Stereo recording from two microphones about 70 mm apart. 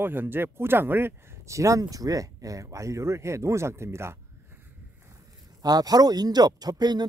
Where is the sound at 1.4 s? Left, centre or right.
Right.